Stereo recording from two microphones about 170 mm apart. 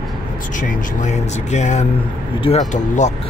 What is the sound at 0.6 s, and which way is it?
Speech, 45° left (ahead or behind).